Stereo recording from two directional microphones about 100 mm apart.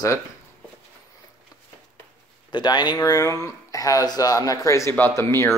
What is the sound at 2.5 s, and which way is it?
A man's voice, 45° left (ahead or behind).